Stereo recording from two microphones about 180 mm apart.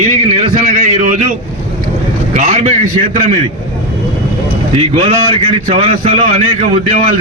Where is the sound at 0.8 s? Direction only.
45° right (ahead or behind).